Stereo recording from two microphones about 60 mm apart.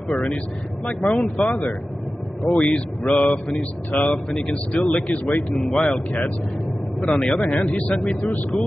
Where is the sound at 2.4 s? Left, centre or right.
Centre.